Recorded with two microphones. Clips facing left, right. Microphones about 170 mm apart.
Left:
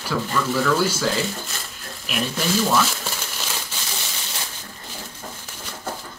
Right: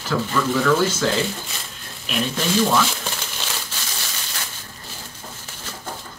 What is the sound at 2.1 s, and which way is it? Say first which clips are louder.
Speech: right 1 dB; centre (ahead or behind).